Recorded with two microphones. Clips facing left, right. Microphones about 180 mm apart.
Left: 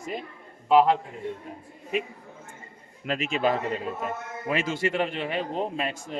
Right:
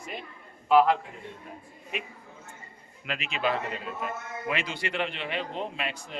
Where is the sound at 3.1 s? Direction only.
45° left (ahead or behind).